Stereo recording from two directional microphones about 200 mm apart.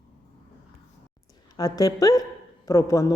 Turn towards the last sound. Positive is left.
turn(degrees=15)  # may be behind; listen again after turning